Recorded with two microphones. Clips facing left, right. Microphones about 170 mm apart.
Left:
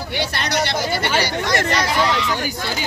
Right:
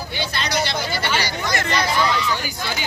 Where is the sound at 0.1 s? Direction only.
65° left (ahead or behind).